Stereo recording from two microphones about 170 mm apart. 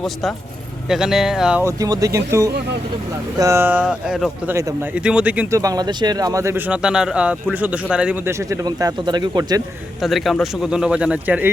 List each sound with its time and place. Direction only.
0.0 s speech: centre (ahead or behind)
1.6 s speech: 20° right (ahead or behind); by 4.5 s centre (ahead or behind)
4.5 s speech: 15° right (ahead or behind)
4.9 s speech: 5° right (ahead or behind)
5.5 s speech: 20° right (ahead or behind)
10.0 s speech: centre (ahead or behind)